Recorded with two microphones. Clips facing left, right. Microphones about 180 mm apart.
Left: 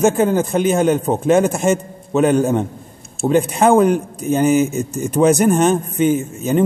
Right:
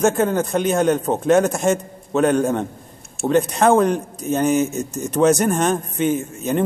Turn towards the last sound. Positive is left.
turn(degrees=5)  # may be behind; listen again after turning